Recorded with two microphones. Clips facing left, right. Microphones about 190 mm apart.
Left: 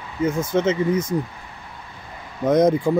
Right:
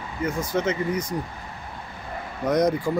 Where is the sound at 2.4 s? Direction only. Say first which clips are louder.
Left 5 dB; 25° left (ahead or behind).